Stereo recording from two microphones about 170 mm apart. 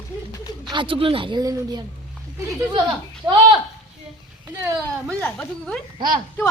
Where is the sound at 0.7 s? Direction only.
30° right (ahead or behind).